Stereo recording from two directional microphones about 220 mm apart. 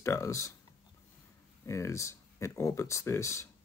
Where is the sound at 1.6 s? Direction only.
15° left (ahead or behind).